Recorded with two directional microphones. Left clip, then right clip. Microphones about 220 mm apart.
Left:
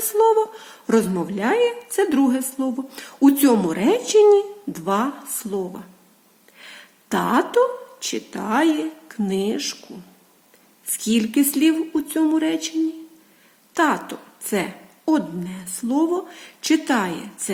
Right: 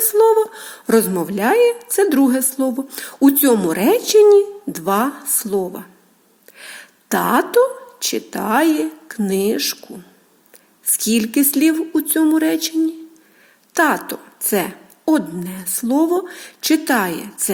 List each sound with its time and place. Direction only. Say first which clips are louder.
0.0 s a woman's voice: right 4 dB; 25° right (ahead or behind)
10.8 s a woman's voice: right 3 dB; 25° right (ahead or behind)
13.7 s a woman's voice: right 4 dB; 25° right (ahead or behind)